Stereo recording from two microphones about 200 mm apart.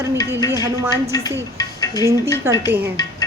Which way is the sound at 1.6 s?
20° left (ahead or behind).